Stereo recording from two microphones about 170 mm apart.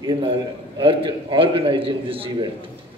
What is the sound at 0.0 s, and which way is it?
A man's voice, 25° right (ahead or behind).